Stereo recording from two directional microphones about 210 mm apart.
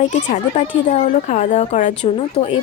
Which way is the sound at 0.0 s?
35° left (ahead or behind).